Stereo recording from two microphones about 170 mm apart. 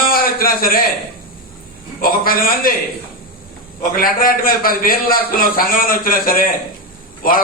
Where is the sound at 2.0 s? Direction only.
60° left (ahead or behind).